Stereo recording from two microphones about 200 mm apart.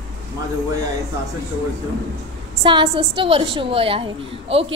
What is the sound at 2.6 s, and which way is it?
A woman's voice, 25° right (ahead or behind).